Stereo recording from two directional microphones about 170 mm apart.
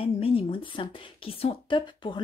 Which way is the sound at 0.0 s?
35° left (ahead or behind).